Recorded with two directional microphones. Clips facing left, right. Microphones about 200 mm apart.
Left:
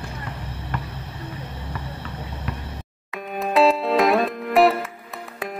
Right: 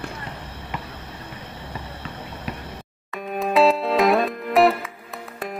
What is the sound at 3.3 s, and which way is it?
Music, centre (ahead or behind).